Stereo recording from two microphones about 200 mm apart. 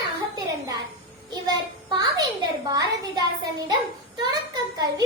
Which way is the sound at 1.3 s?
20° right (ahead or behind).